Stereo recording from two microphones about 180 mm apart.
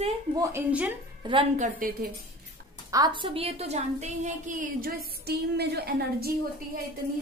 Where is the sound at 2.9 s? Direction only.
25° right (ahead or behind).